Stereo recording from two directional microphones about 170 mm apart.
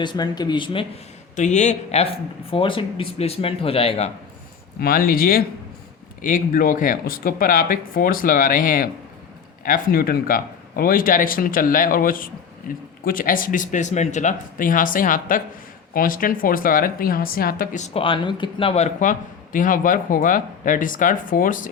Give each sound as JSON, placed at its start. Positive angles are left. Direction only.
{"t": 0.0, "sound": "speech", "side_deg": 25}
{"t": 1.4, "sound": "speech", "side_deg": 45}
{"t": 2.5, "sound": "a man's voice", "side_deg": 30}
{"t": 4.8, "sound": "speech", "side_deg": 60}